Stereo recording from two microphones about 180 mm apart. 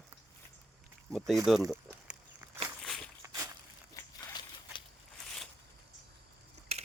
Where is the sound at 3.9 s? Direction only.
20° left (ahead or behind).